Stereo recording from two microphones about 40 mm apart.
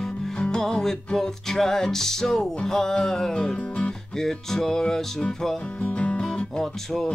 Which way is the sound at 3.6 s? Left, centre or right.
Left.